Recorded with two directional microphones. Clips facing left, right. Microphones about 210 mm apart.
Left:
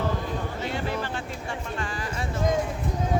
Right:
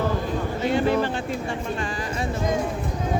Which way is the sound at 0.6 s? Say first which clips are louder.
Right 11 dB; 15° right (ahead or behind).